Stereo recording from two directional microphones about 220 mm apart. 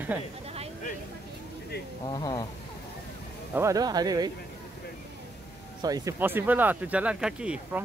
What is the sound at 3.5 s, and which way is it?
Speech, 15° right (ahead or behind).